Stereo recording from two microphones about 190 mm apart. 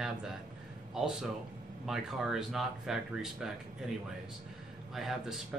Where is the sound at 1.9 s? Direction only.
Centre (ahead or behind).